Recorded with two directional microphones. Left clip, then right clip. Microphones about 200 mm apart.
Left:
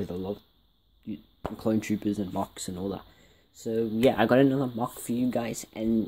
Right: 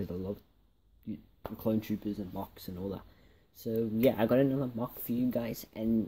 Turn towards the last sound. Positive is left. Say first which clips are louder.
# left 5 dB
turn(degrees=5)  # may be behind; listen again after turning